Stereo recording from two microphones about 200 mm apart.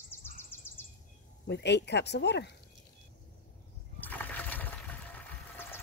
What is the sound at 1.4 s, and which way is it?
Speech, 60° left (ahead or behind).